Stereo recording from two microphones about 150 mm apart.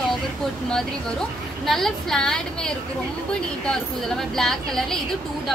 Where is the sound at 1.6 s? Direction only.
Centre (ahead or behind).